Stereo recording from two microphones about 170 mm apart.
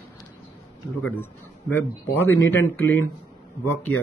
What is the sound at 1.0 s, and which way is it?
A man's voice, 10° left (ahead or behind).